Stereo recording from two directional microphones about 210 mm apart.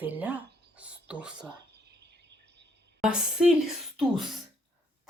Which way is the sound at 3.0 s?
5° right (ahead or behind).